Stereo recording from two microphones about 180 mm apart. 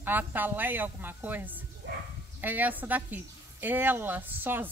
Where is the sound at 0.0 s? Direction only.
10° right (ahead or behind).